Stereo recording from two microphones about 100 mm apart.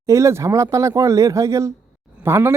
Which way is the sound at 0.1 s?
30° right (ahead or behind).